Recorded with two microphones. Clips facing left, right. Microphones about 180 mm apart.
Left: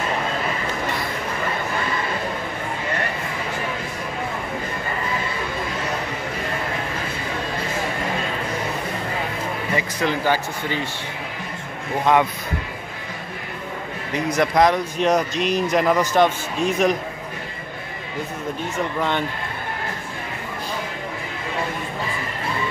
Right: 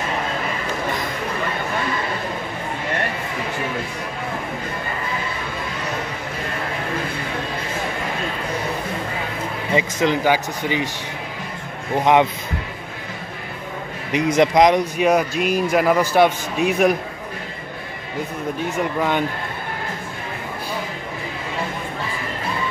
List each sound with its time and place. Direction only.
9.8 s speech: 20° right (ahead or behind)
12.0 s speech: 20° right (ahead or behind)
14.1 s speech: 20° right (ahead or behind)
18.9 s speech: 10° right (ahead or behind)